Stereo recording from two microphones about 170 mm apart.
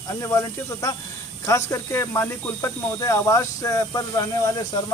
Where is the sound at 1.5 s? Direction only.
15° left (ahead or behind).